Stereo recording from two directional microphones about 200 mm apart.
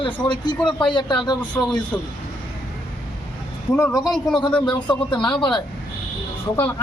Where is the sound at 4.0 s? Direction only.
Centre (ahead or behind).